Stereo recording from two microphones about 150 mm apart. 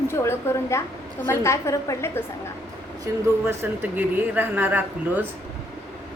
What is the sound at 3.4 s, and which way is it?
Speech, 15° right (ahead or behind).